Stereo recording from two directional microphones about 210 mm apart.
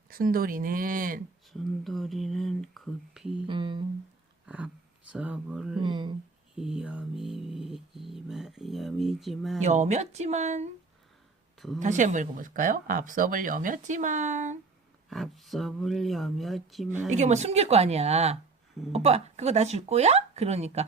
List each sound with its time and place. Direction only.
0.1 s speech: 45° right (ahead or behind)
1.5 s a sound: centre (ahead or behind)
3.4 s humming: 25° right (ahead or behind)
4.4 s speech: 5° right (ahead or behind)
5.8 s humming: 20° right (ahead or behind)
6.6 s a sound: centre (ahead or behind)
9.6 s speech: 35° right (ahead or behind)
11.8 s speech: 35° right (ahead or behind)
15.1 s a sound: centre (ahead or behind)
17.1 s speech: 35° right (ahead or behind)